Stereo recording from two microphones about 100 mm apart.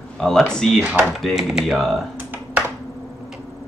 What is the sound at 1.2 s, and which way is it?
Speech, 5° right (ahead or behind).